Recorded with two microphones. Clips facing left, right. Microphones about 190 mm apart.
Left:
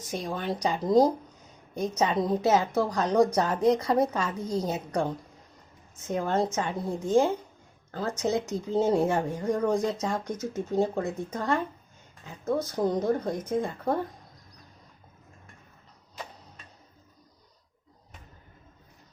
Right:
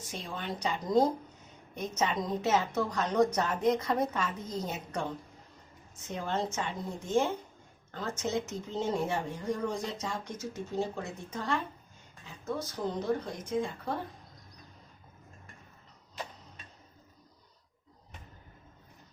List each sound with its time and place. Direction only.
0.1 s a woman's voice: 45° left (ahead or behind)
9.1 s speech: 50° left (ahead or behind)